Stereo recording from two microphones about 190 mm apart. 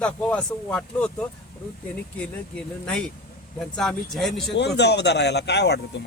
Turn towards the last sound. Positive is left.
turn(degrees=60)  # may be behind; listen again after turning